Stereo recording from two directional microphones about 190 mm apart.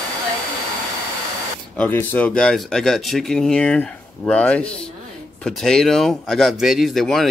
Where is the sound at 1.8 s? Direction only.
10° left (ahead or behind).